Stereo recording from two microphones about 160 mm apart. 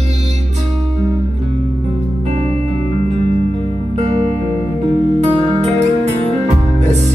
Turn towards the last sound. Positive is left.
turn(degrees=-45)  # may be behind; listen again after turning